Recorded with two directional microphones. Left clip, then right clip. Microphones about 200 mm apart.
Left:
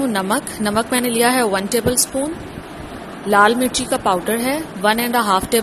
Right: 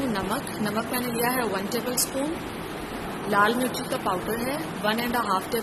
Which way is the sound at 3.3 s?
30° left (ahead or behind).